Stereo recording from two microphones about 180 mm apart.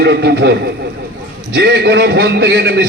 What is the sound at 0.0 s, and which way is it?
Speech, 65° right (ahead or behind).